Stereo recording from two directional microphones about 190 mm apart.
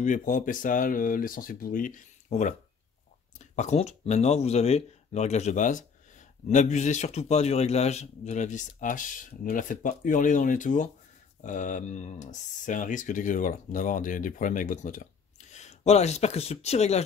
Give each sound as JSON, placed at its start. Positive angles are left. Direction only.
{"t": 0.0, "sound": "speech", "side_deg": 45}